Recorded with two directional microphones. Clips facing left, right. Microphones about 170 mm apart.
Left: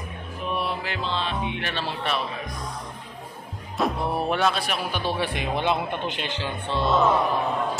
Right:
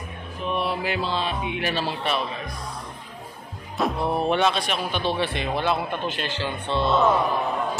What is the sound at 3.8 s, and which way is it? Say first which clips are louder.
Speech: right 1 dB; centre (ahead or behind).